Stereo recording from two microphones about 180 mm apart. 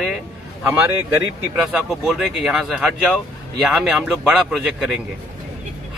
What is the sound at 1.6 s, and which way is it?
Speech, centre (ahead or behind).